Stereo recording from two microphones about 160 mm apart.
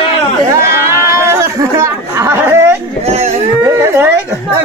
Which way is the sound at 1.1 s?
20° right (ahead or behind).